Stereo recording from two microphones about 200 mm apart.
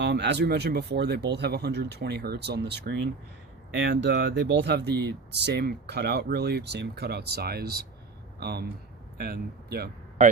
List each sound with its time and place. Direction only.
0.0 s speech: 60° right (ahead or behind)